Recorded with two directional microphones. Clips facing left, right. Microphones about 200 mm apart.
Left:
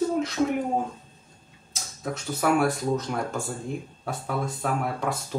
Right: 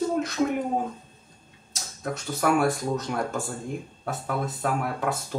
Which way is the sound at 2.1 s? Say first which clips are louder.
Even; centre (ahead or behind).